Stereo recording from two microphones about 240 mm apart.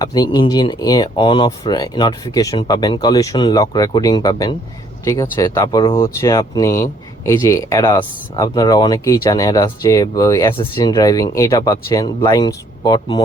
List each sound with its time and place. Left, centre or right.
0.0 s speech: centre